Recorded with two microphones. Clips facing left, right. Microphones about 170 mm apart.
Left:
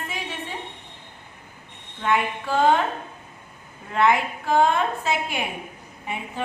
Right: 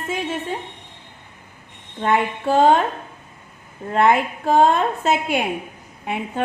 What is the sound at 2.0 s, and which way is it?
Female singing, 25° right (ahead or behind).